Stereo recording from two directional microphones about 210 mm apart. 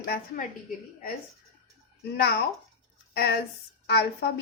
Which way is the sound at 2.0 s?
50° left (ahead or behind).